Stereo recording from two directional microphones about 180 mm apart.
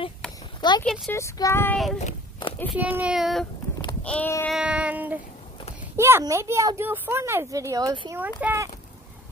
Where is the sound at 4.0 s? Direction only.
10° left (ahead or behind).